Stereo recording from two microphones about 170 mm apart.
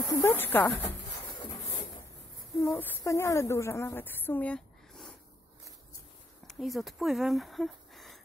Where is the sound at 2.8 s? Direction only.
15° left (ahead or behind).